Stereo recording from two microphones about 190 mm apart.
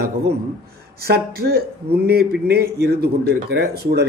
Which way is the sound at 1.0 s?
55° right (ahead or behind).